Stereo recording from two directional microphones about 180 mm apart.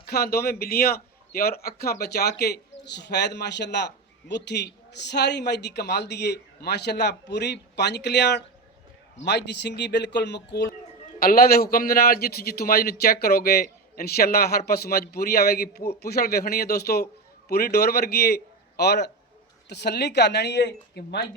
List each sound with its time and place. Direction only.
0.0 s a man's voice: 60° left (ahead or behind)
11.2 s a man's voice: 55° left (ahead or behind)